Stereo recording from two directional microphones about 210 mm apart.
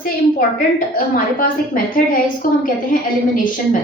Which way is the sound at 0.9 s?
40° left (ahead or behind).